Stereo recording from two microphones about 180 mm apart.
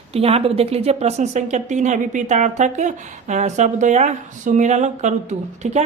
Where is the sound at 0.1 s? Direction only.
35° right (ahead or behind).